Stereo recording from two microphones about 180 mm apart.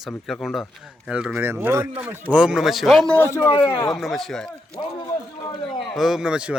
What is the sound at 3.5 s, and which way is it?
Speech, 25° left (ahead or behind).